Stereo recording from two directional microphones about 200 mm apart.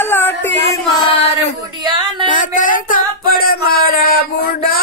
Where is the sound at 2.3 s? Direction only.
40° left (ahead or behind).